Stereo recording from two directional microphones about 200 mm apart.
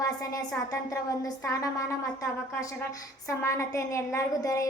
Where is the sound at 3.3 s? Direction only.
15° left (ahead or behind).